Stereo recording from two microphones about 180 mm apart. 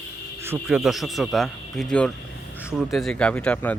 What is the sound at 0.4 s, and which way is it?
Speech, 10° right (ahead or behind).